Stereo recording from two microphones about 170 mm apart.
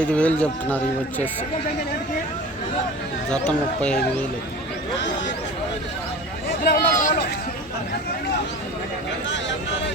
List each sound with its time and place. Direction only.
0.0 s speech: 5° left (ahead or behind)
3.2 s speech: 5° left (ahead or behind)
6.6 s speech: 60° left (ahead or behind)